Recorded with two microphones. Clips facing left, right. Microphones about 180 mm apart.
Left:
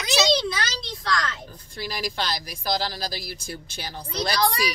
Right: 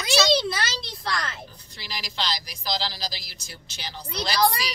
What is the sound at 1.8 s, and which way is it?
A woman's voice, 50° left (ahead or behind).